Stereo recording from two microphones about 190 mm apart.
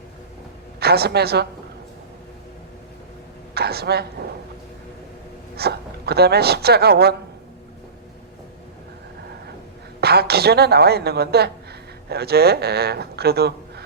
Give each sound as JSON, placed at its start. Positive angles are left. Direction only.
{"t": 0.8, "sound": "speech", "side_deg": -55}
{"t": 3.5, "sound": "a woman's voice", "side_deg": -55}
{"t": 5.5, "sound": "speech", "side_deg": -55}
{"t": 10.0, "sound": "speech", "side_deg": -55}